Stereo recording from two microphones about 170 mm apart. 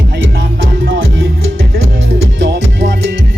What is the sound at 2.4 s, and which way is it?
Music, 90° right.